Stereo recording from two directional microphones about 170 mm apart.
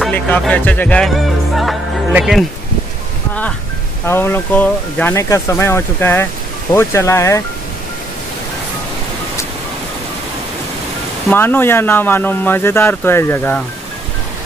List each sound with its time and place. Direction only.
0.1 s speech: 10° left (ahead or behind)
4.0 s speech: 15° left (ahead or behind)
11.2 s speech: 10° left (ahead or behind)